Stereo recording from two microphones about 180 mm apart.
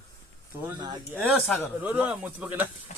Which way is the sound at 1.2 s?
Centre (ahead or behind).